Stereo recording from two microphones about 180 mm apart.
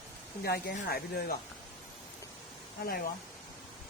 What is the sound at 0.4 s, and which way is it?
Speech, 65° left (ahead or behind).